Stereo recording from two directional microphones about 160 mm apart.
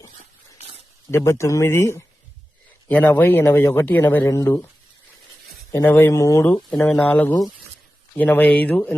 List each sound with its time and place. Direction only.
1.1 s speech: 15° left (ahead or behind)
5.7 s speech: 15° left (ahead or behind)